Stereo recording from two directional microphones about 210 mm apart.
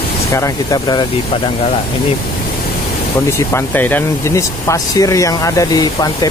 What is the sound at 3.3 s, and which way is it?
Speech, 10° left (ahead or behind).